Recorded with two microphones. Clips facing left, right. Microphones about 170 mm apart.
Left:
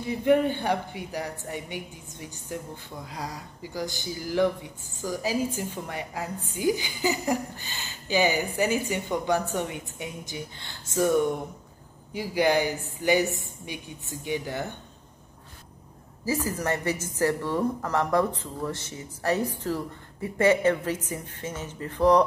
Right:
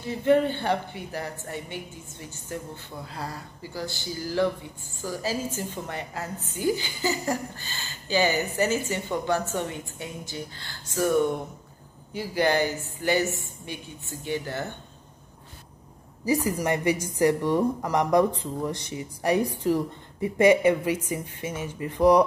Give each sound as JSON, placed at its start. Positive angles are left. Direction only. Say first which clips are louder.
{"t": 0.1, "sound": "a woman's voice", "louder": "even", "side_deg": 10}
{"t": 16.3, "sound": "a woman's voice", "louder": "right 3 dB", "side_deg": -15}